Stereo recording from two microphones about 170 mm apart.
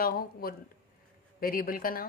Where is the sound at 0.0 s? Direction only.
60° left (ahead or behind).